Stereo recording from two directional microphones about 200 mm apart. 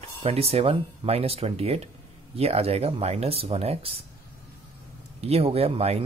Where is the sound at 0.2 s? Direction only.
30° right (ahead or behind).